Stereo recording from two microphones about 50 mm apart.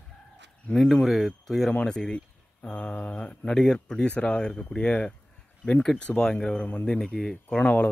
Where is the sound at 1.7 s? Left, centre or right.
Centre.